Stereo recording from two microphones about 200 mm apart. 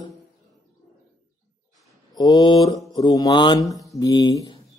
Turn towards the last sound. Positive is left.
turn(degrees=20)  # may be behind; listen again after turning